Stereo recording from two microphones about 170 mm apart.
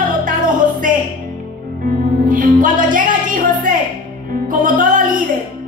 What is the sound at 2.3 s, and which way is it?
Speech, 50° right (ahead or behind).